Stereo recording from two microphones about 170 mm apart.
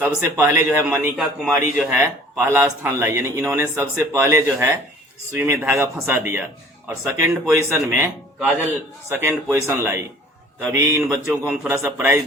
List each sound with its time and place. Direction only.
0.2 s a man's voice: 15° right (ahead or behind)
1.1 s a man's voice: 5° right (ahead or behind)